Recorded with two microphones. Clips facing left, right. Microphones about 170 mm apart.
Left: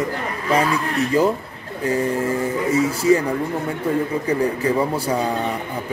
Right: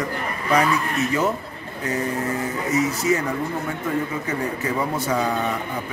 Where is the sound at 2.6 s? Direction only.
30° left (ahead or behind).